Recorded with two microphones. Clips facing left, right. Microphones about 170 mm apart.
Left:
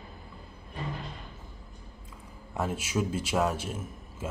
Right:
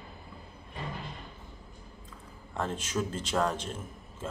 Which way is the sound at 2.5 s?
10° left (ahead or behind).